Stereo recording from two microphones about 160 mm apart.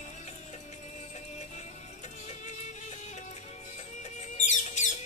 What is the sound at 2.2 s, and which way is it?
Music, 45° left (ahead or behind).